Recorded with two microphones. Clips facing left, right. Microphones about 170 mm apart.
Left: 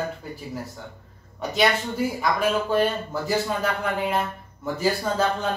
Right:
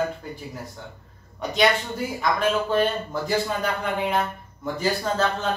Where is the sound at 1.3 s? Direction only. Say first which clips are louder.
Right 1 dB; 5° left (ahead or behind).